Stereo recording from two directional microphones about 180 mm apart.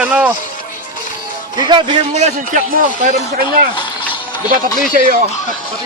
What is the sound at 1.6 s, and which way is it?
Speech, 25° right (ahead or behind).